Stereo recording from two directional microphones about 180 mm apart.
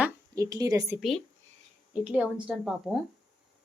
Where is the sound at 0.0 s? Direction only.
20° right (ahead or behind).